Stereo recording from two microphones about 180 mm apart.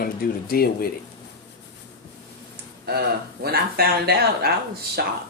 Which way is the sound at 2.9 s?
60° right (ahead or behind).